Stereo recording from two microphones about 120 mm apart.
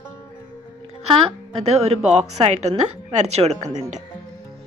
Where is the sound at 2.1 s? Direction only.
65° right (ahead or behind).